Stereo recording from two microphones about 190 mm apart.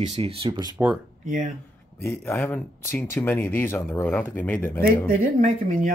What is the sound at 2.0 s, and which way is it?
Speech, 10° left (ahead or behind).